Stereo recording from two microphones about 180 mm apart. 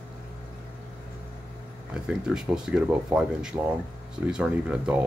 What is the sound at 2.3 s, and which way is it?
Speech, 5° right (ahead or behind).